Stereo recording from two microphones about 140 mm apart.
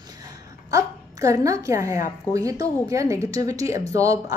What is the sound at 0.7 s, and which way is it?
A woman's voice, 25° right (ahead or behind).